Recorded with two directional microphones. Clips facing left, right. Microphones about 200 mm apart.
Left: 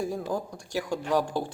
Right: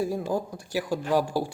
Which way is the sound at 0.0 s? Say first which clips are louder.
Right 3 dB; 10° right (ahead or behind).